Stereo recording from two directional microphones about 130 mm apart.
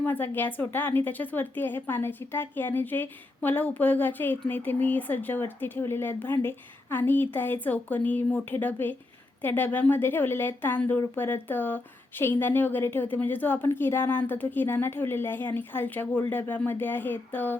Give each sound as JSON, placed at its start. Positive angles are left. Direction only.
{"t": 0.0, "sound": "a woman's voice", "side_deg": 15}